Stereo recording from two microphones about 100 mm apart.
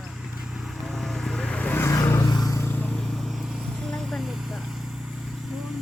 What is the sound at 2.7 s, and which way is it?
Vehicle, 15° left (ahead or behind).